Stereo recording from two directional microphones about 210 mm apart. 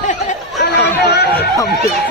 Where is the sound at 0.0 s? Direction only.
35° left (ahead or behind).